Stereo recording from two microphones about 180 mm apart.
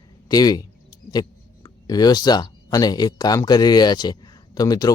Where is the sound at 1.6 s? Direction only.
20° left (ahead or behind).